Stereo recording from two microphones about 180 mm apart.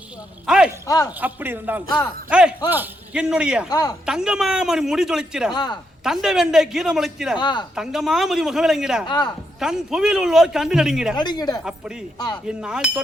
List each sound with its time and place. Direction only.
0.4 s a sound: 5° right (ahead or behind)
0.9 s speech: 20° left (ahead or behind)
1.2 s a man's voice: 10° right (ahead or behind)
3.7 s speech: 20° left (ahead or behind)
4.0 s a man's voice: 5° right (ahead or behind)
7.3 s speech: 25° left (ahead or behind)
7.8 s a man's voice: centre (ahead or behind)
9.0 s speech: 25° left (ahead or behind)
9.6 s a man's voice: 5° right (ahead or behind)
11.2 s speech: 25° left (ahead or behind)
12.5 s a man's voice: 5° right (ahead or behind)